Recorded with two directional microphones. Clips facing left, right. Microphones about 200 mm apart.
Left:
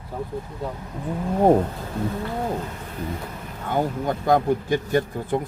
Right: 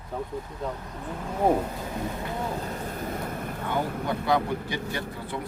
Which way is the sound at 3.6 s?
45° left (ahead or behind).